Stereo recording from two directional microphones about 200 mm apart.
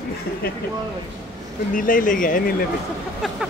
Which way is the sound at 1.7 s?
40° left (ahead or behind).